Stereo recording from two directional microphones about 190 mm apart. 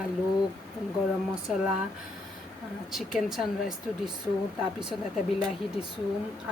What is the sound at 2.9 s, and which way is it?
Speech, centre (ahead or behind).